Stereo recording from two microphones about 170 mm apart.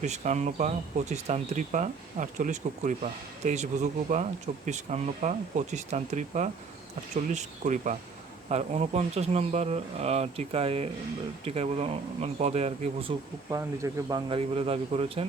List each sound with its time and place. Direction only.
0.0 s speech: 40° right (ahead or behind)
13.5 s speech: 20° right (ahead or behind); by 15.2 s 35° right (ahead or behind)